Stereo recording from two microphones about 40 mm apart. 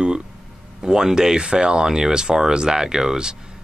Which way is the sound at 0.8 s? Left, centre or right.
Centre.